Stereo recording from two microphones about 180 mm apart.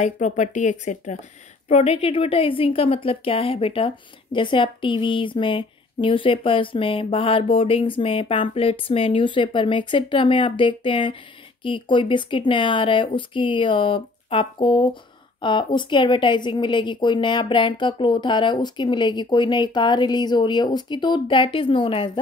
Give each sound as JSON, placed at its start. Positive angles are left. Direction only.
{"t": 0.0, "sound": "a woman's voice", "side_deg": 40}